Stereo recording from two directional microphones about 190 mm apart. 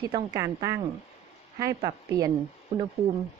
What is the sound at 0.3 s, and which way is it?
Speech, 15° right (ahead or behind).